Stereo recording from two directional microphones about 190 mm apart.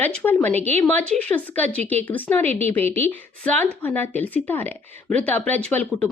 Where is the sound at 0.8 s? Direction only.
5° left (ahead or behind).